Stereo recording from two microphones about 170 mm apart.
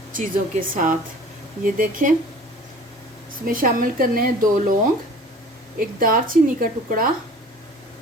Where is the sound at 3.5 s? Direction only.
55° right (ahead or behind).